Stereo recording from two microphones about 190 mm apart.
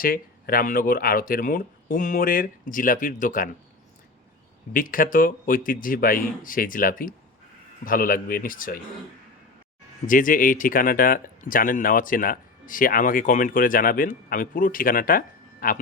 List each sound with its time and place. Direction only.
0.0 s speech: 50° left (ahead or behind)
4.7 s speech: 45° left (ahead or behind)
10.1 s speech: 45° left (ahead or behind)